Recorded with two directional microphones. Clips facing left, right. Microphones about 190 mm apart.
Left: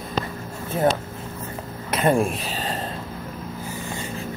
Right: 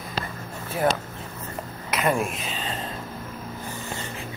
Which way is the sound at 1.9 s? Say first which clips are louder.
Left 4 dB; 30° left (ahead or behind).